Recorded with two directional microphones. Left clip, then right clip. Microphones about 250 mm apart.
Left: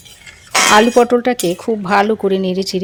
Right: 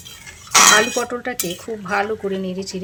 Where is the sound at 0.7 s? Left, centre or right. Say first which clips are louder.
Left 8 dB; left.